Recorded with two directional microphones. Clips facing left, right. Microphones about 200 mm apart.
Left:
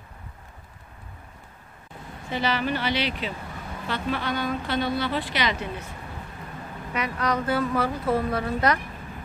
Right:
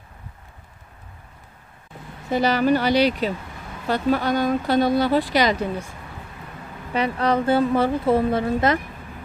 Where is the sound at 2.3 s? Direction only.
40° right (ahead or behind).